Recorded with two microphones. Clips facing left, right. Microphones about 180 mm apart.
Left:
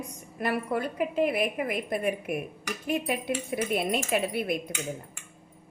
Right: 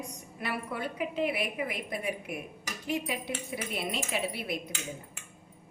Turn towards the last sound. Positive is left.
turn(degrees=50)  # may be behind; listen again after turning